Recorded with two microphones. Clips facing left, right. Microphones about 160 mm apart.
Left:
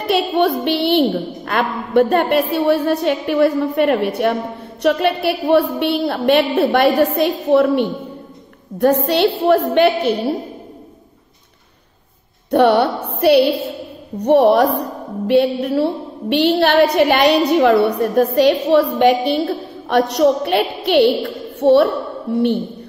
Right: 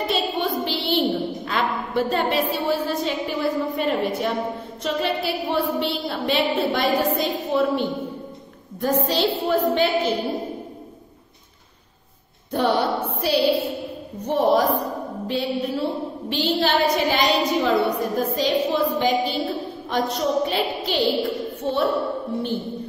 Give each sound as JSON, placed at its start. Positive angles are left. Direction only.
{"t": 0.1, "sound": "a woman's voice", "side_deg": 65}
{"t": 12.4, "sound": "a woman's voice", "side_deg": 65}